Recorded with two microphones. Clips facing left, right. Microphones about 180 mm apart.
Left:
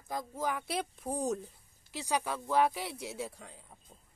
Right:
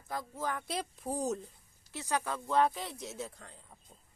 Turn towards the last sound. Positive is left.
turn(degrees=10)  # may be behind; listen again after turning